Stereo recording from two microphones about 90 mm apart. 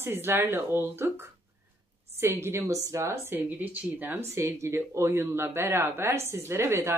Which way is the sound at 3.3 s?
20° right (ahead or behind).